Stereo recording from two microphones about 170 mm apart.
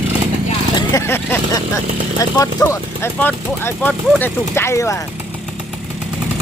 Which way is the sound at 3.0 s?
10° left (ahead or behind).